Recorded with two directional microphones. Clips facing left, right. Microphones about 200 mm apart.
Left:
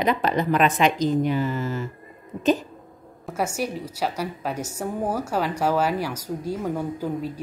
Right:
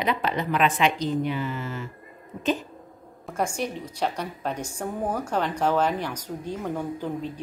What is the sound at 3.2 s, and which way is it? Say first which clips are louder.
A woman's voice: left 1 dB; 5° left (ahead or behind).